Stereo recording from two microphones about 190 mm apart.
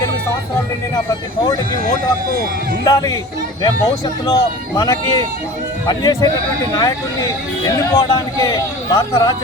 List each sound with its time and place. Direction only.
2.8 s speech: 20° left (ahead or behind)
4.3 s speech: 20° left (ahead or behind)